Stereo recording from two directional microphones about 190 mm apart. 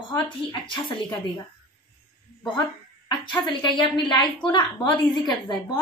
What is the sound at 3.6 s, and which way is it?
A woman's voice, 25° left (ahead or behind).